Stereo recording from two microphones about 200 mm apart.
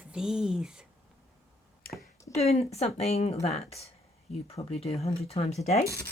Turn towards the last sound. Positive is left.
turn(degrees=35)  # may be behind; listen again after turning